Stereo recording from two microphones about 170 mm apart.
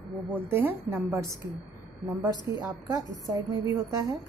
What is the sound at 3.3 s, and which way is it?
Speech, 20° right (ahead or behind).